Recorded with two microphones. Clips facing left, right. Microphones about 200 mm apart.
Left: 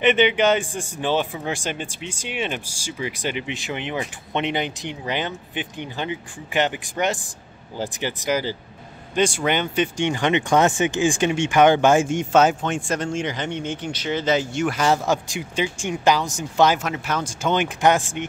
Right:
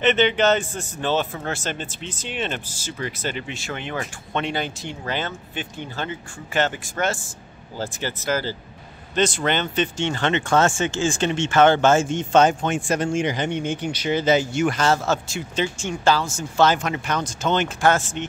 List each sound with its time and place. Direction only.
0.0 s speech: 10° left (ahead or behind)
14.8 s speech: 15° left (ahead or behind)
16.8 s speech: 5° left (ahead or behind)